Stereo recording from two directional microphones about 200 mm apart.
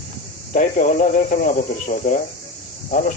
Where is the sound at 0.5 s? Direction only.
40° left (ahead or behind).